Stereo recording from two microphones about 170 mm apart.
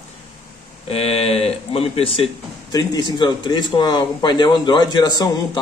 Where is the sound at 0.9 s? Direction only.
35° left (ahead or behind).